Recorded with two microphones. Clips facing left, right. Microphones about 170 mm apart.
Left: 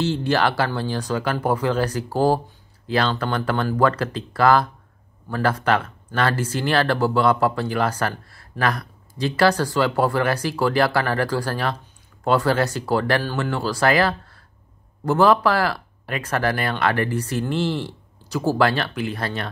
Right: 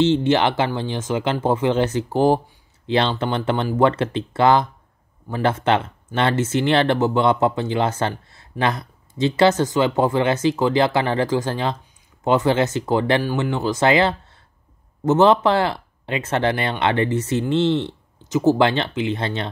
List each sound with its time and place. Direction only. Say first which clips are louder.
0.0 s speech: right 4 dB; 20° right (ahead or behind)